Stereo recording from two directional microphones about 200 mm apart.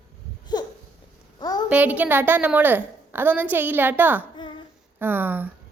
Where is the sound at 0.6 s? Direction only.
20° left (ahead or behind).